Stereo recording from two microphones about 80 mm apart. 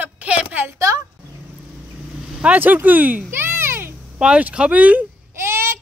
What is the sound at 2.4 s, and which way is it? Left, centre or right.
Speech, right.